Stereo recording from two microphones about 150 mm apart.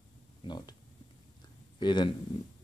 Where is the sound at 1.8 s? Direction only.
30° left (ahead or behind).